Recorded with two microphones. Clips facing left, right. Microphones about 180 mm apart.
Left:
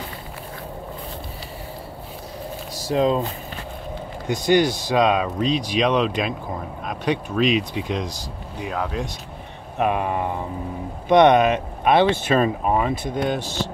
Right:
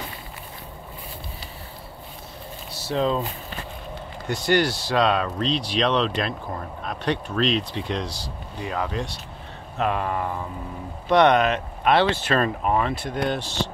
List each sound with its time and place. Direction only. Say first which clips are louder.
2.7 s a sound: left 4 dB; 10° left (ahead or behind)
4.3 s speech: left 3 dB; 15° left (ahead or behind)
9.8 s speech: left 3 dB; 15° left (ahead or behind)